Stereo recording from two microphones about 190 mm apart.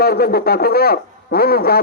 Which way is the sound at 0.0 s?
55° left (ahead or behind).